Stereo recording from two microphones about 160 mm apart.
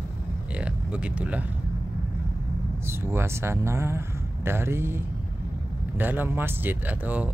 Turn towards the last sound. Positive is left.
turn(degrees=-10)  # may be behind; listen again after turning